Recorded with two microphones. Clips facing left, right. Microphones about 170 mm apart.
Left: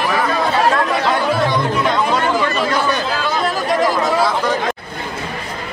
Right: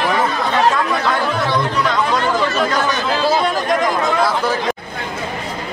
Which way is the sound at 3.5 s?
Centre (ahead or behind).